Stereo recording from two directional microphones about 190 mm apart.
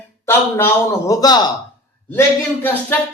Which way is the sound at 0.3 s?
10° left (ahead or behind).